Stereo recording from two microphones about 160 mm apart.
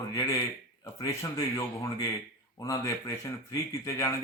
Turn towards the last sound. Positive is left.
turn(degrees=20)  # may be behind; listen again after turning